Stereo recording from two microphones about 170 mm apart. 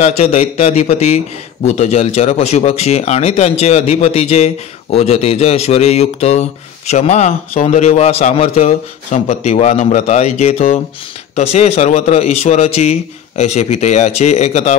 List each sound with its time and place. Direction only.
0.0 s a man's voice: 40° left (ahead or behind)